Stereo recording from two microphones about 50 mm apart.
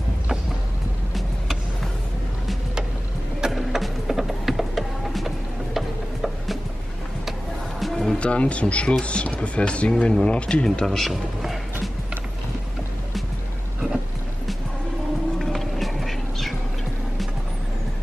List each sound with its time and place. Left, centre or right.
3.3 s music: centre
7.8 s music: centre
8.2 s speech: left
11.0 s music: centre
15.3 s music: centre